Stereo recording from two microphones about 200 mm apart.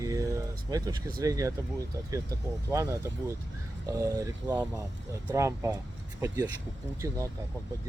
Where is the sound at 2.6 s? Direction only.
15° right (ahead or behind).